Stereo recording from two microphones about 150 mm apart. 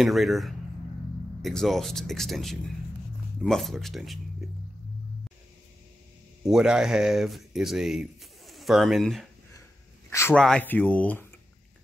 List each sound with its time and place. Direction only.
0.0 s speech: centre (ahead or behind)
6.5 s speech: 5° right (ahead or behind)
10.0 s a sound: 15° left (ahead or behind)
10.3 s speech: 5° left (ahead or behind)